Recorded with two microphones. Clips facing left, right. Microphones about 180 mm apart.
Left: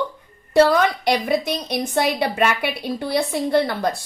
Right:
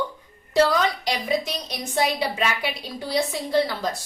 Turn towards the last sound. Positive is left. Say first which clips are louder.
# left 4 dB
turn(degrees=55)  # may be behind; listen again after turning